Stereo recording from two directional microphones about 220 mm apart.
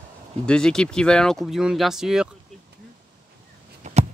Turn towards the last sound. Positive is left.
turn(degrees=-30)  # may be behind; listen again after turning